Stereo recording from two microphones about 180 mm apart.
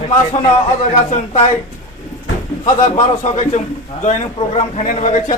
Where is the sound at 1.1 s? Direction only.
35° left (ahead or behind).